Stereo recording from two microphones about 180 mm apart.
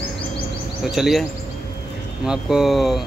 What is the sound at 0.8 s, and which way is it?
Speech, centre (ahead or behind).